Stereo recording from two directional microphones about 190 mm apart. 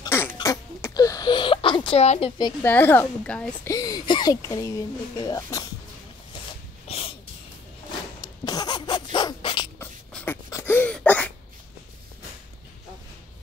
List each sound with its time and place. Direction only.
0.0 s a sound: 10° left (ahead or behind)
2.6 s a woman's voice: 10° left (ahead or behind)
3.7 s speech: 20° left (ahead or behind)
6.9 s wheeze: 30° left (ahead or behind)
8.2 s dog: 20° left (ahead or behind)
9.8 s a sound: 10° left (ahead or behind)